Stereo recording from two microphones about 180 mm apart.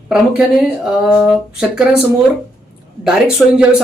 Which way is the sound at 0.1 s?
Centre (ahead or behind).